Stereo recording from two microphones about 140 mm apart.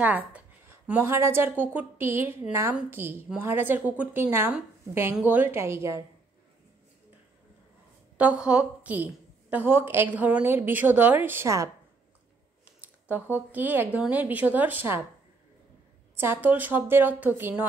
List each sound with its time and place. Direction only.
0.0 s a woman's voice: 10° right (ahead or behind)
8.2 s a woman's voice: 10° right (ahead or behind)
12.8 s a woman's voice: 10° right (ahead or behind)
16.2 s a woman's voice: 15° right (ahead or behind)